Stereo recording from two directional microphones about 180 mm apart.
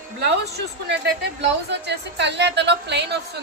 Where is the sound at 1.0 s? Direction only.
70° right (ahead or behind).